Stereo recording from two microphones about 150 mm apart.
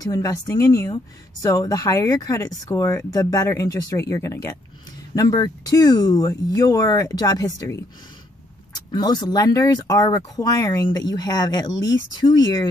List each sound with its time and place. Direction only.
0.0 s speech: 25° left (ahead or behind)